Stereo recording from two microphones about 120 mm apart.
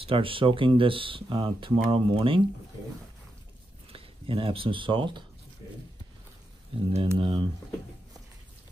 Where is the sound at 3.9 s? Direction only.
50° right (ahead or behind).